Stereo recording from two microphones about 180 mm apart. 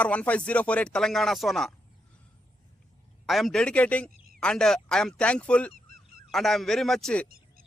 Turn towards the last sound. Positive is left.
turn(degrees=5)  # may be behind; listen again after turning